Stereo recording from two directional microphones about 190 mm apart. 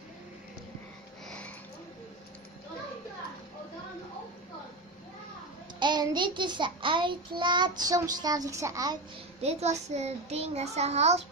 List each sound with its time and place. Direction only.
5.8 s child singing: 25° right (ahead or behind)
9.4 s child singing: 35° right (ahead or behind)